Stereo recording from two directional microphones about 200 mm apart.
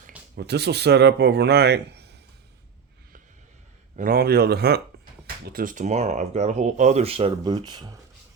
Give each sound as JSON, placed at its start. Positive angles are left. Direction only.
{"t": 0.3, "sound": "speech", "side_deg": -55}
{"t": 3.9, "sound": "speech", "side_deg": -45}